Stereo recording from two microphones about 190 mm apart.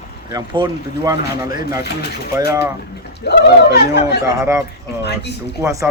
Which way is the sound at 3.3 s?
60° left (ahead or behind).